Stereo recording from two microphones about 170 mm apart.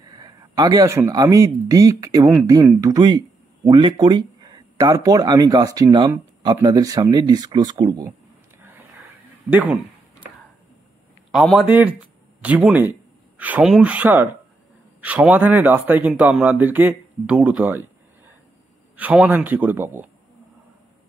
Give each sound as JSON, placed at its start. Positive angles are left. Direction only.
{"t": 0.1, "sound": "speech", "side_deg": -25}
{"t": 9.5, "sound": "speech", "side_deg": -10}
{"t": 11.3, "sound": "speech", "side_deg": 0}